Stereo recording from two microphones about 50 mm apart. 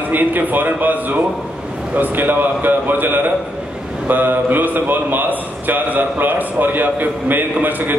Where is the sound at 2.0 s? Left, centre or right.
Right.